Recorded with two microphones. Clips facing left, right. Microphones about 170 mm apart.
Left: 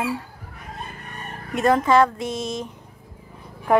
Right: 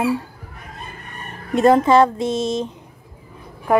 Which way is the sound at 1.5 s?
30° right (ahead or behind).